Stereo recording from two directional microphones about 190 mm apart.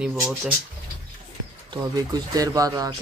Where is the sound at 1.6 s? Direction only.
20° right (ahead or behind).